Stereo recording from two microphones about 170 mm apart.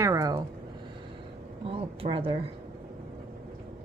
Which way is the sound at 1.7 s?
35° right (ahead or behind).